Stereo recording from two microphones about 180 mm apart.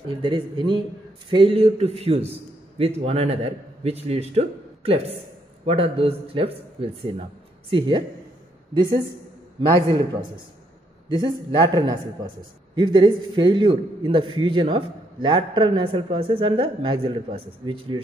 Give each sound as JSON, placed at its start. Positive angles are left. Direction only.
{"t": 0.1, "sound": "a man's voice", "side_deg": -25}
{"t": 11.1, "sound": "a man's voice", "side_deg": -25}